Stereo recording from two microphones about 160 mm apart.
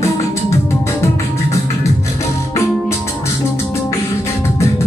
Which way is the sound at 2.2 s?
20° left (ahead or behind).